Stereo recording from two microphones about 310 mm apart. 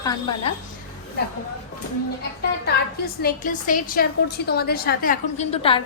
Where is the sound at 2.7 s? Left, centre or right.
Left.